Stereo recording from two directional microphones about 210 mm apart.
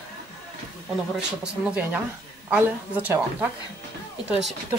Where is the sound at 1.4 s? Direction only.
5° right (ahead or behind).